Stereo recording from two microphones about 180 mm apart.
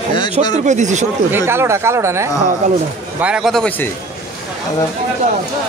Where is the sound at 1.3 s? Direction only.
15° right (ahead or behind).